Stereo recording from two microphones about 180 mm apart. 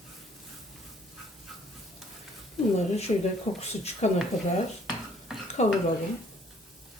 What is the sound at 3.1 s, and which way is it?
Speech, 30° left (ahead or behind).